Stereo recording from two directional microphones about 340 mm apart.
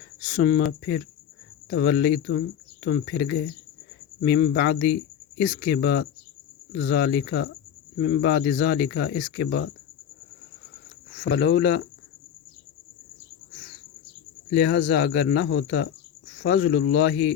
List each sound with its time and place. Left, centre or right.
0.3 s speech: left
1.7 s speech: left
11.2 s speech: left
14.6 s speech: left